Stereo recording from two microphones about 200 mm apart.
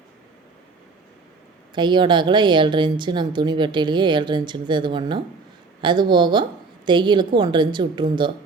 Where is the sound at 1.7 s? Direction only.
25° right (ahead or behind).